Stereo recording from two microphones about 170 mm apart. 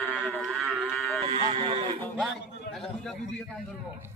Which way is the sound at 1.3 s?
35° right (ahead or behind).